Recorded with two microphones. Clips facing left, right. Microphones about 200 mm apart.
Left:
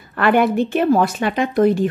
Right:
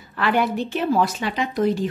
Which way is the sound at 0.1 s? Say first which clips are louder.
Left 6 dB; 55° left (ahead or behind).